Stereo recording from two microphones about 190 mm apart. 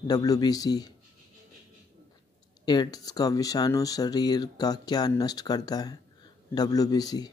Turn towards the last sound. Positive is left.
turn(degrees=20)  # may be behind; listen again after turning